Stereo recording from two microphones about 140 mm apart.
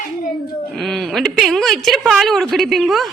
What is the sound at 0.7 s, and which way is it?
A woman's voice, centre (ahead or behind).